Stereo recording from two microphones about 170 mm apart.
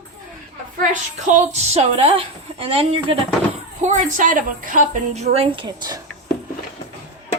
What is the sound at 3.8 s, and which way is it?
A woman's voice, 45° right (ahead or behind).